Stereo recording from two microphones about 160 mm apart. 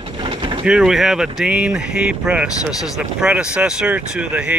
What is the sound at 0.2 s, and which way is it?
Vehicle, 30° right (ahead or behind).